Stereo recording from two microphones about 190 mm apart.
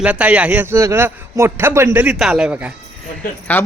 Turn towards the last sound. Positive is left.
turn(degrees=10)  # may be behind; listen again after turning